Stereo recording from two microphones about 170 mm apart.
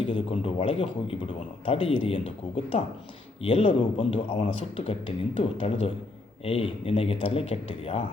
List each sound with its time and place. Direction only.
0.0 s a man's voice: 35° left (ahead or behind)